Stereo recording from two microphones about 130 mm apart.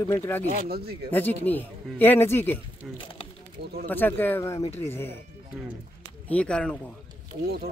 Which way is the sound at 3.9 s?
15° left (ahead or behind).